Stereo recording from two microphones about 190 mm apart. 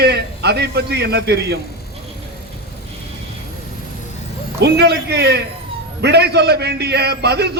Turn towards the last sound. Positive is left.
turn(degrees=-60)  # may be behind; listen again after turning